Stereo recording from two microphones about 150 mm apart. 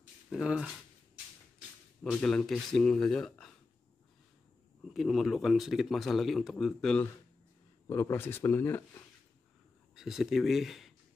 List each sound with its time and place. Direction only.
0.3 s a man's voice: 5° right (ahead or behind)
2.1 s a man's voice: 5° left (ahead or behind)
4.9 s a man's voice: centre (ahead or behind)
7.9 s speech: 15° left (ahead or behind)
9.9 s a man's voice: 5° right (ahead or behind)